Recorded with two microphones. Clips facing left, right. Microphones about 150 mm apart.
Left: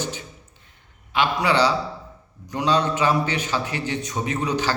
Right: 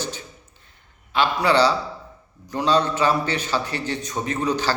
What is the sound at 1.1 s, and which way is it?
A man's voice, 15° left (ahead or behind).